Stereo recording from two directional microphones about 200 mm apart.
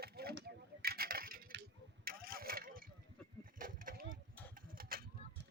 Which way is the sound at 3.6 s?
45° right (ahead or behind).